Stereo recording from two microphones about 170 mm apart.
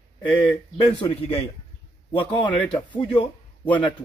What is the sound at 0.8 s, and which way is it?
A man's voice, 30° left (ahead or behind).